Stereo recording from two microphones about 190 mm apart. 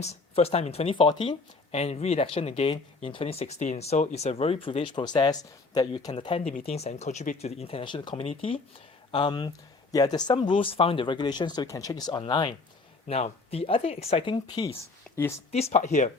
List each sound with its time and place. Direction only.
0.0 s speech: 35° left (ahead or behind); by 15.4 s 15° left (ahead or behind)
15.5 s speech: 40° left (ahead or behind)